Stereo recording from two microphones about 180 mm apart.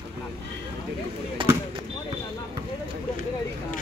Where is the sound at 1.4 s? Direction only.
30° right (ahead or behind).